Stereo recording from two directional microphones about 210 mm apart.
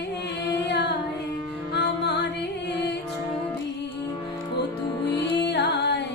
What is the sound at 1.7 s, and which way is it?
Music, 55° left (ahead or behind).